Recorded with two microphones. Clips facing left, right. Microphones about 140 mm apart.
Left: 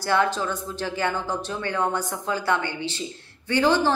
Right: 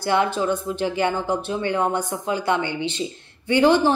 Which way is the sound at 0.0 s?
15° right (ahead or behind).